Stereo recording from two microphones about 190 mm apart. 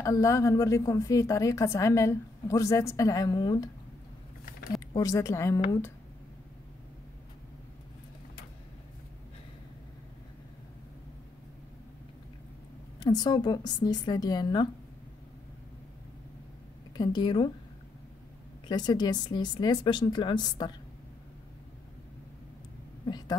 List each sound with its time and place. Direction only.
0.0 s a woman's voice: 15° left (ahead or behind)
4.9 s a woman's voice: 20° left (ahead or behind)
13.0 s a woman's voice: 20° left (ahead or behind)
16.9 s a woman's voice: 20° left (ahead or behind)
18.7 s a woman's voice: 20° left (ahead or behind)
23.0 s heart sounds: 20° left (ahead or behind)